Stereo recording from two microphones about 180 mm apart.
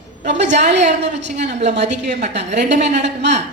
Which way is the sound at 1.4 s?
40° right (ahead or behind).